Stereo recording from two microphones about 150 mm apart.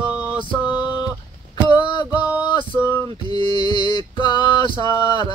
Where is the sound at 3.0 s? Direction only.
35° right (ahead or behind).